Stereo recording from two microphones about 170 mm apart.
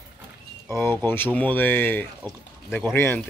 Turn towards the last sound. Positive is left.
turn(degrees=15)  # may be behind; listen again after turning